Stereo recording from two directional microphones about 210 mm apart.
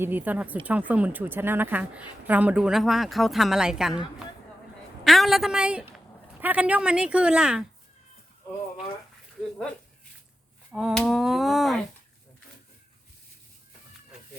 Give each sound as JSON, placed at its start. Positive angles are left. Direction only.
{"t": 0.0, "sound": "a woman's voice", "side_deg": -10}
{"t": 5.0, "sound": "speech", "side_deg": 0}
{"t": 10.7, "sound": "speech", "side_deg": 0}